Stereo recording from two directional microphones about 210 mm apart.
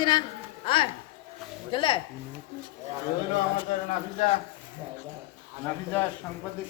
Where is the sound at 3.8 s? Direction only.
35° left (ahead or behind).